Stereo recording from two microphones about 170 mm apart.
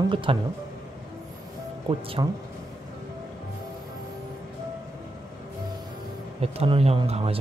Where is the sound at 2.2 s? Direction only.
25° right (ahead or behind).